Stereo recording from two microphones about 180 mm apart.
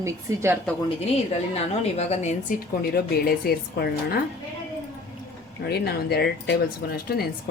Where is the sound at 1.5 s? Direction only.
35° left (ahead or behind).